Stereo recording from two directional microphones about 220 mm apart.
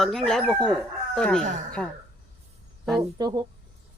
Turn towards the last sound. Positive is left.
turn(degrees=-20)  # may be behind; listen again after turning